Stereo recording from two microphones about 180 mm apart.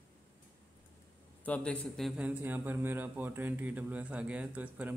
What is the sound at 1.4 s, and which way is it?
A man's voice, 5° left (ahead or behind).